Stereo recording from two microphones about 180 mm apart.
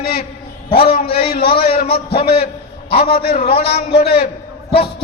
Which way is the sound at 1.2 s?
60° left (ahead or behind).